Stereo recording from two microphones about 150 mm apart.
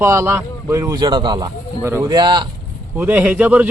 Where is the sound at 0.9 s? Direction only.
30° right (ahead or behind).